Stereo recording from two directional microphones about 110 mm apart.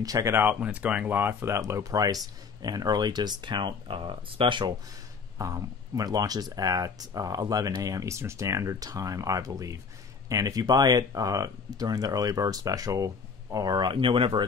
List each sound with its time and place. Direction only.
0.0 s speech: 30° right (ahead or behind)
0.4 s speech: 15° right (ahead or behind); by 4.7 s 45° right (ahead or behind)
5.4 s speech: 30° right (ahead or behind); by 14.4 s 50° right (ahead or behind)